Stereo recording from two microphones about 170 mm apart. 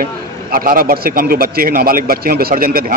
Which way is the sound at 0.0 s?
55° right (ahead or behind).